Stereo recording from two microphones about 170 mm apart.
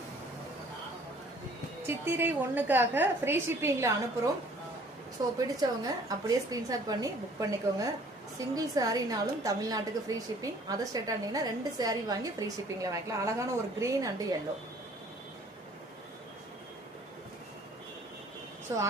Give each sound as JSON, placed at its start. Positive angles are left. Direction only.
{"t": 1.9, "sound": "a woman's voice", "side_deg": -10}
{"t": 5.5, "sound": "a woman's voice", "side_deg": -20}
{"t": 18.7, "sound": "a woman's voice", "side_deg": -15}